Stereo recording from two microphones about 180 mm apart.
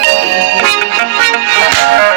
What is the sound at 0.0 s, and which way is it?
Music, 90° right.